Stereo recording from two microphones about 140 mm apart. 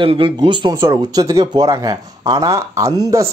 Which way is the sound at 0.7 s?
25° right (ahead or behind).